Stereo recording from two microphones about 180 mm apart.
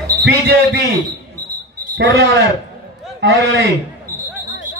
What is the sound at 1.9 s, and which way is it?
A man's voice, 75° right (ahead or behind).